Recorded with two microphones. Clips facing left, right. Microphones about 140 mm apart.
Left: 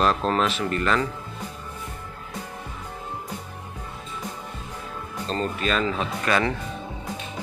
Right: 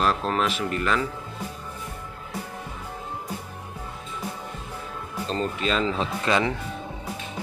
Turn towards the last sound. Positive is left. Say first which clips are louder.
# even
turn(degrees=-20)  # may be behind; listen again after turning